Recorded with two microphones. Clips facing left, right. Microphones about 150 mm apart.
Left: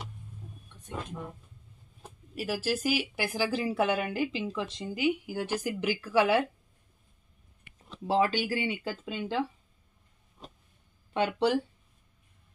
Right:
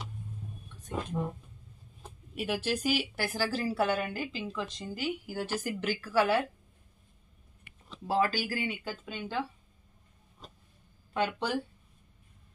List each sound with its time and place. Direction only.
2.0 s speech: centre (ahead or behind); by 6.4 s 20° left (ahead or behind)
8.1 s speech: 25° left (ahead or behind)
11.1 s speech: 25° left (ahead or behind)